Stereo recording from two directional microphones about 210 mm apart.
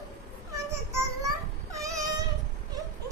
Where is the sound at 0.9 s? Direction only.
15° right (ahead or behind).